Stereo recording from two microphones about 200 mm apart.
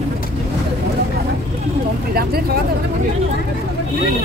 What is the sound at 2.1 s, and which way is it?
Speech, 50° right (ahead or behind).